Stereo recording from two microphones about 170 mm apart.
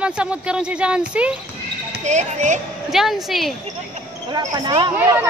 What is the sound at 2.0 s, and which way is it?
Speech, 45° right (ahead or behind).